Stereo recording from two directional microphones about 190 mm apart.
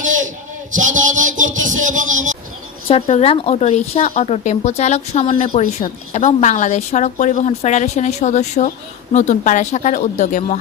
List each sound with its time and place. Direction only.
0.0 s a sound: 40° right (ahead or behind)
0.7 s a man's voice: 40° right (ahead or behind)
2.8 s a woman's voice: 30° left (ahead or behind)